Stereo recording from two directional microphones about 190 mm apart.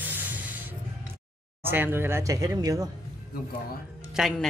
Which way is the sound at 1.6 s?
10° right (ahead or behind).